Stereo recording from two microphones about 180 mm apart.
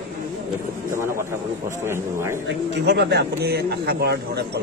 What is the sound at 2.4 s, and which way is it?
Speech, 70° right (ahead or behind).